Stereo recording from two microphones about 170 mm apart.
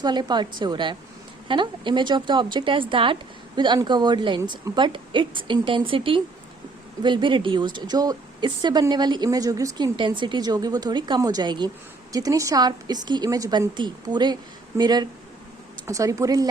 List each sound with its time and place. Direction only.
0.0 s speech: 25° right (ahead or behind)